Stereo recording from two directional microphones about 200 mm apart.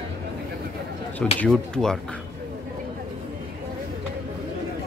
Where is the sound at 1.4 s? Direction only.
5° left (ahead or behind).